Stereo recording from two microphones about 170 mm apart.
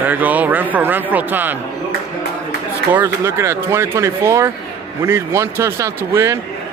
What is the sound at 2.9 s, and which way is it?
Speech, 15° right (ahead or behind).